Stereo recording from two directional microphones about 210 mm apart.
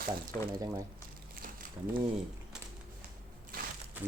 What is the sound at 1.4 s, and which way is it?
Crumpling, 40° right (ahead or behind).